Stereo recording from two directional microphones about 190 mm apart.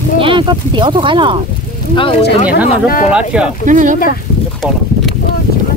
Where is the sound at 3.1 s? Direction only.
5° right (ahead or behind).